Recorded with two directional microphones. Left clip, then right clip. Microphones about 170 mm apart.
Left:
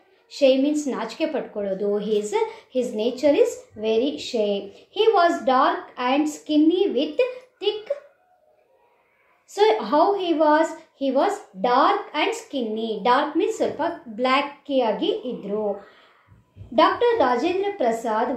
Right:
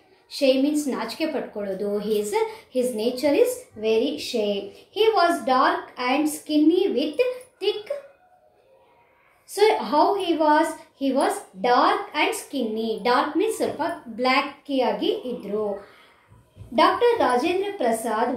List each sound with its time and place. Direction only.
0.3 s a woman's voice: 5° right (ahead or behind)
9.5 s a woman's voice: centre (ahead or behind)
16.7 s a woman's voice: centre (ahead or behind)